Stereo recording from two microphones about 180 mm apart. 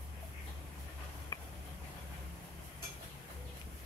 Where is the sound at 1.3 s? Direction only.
20° left (ahead or behind).